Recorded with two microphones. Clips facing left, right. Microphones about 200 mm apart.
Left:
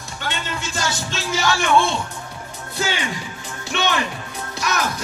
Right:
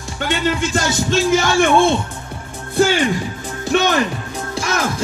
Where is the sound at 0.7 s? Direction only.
50° right (ahead or behind).